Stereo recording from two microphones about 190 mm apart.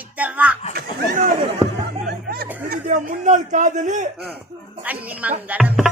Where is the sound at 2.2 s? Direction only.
55° right (ahead or behind).